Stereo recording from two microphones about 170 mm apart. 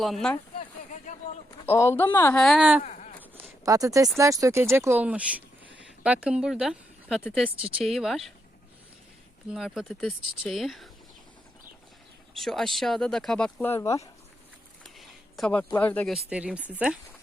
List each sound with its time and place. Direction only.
0.0 s speech: centre (ahead or behind)
1.5 s speech: 15° left (ahead or behind)
2.4 s speech: centre (ahead or behind)
2.8 s a sound: 45° left (ahead or behind)
3.3 s a sound: 20° right (ahead or behind)
4.2 s speech: 20° right (ahead or behind); by 8.3 s centre (ahead or behind)
9.5 s speech: centre (ahead or behind)
12.4 s speech: centre (ahead or behind)
14.8 s speech: centre (ahead or behind)